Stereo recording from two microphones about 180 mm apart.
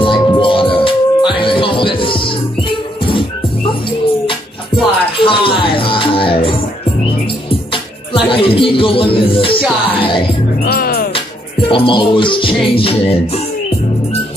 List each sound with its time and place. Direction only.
0.0 s music: 30° left (ahead or behind)
5.1 s music: 30° left (ahead or behind)
7.7 s speech: 30° left (ahead or behind)
10.6 s music: 55° left (ahead or behind)
11.7 s music: 30° left (ahead or behind)